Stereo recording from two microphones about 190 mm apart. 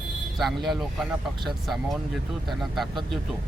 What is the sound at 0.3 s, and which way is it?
Speech, centre (ahead or behind).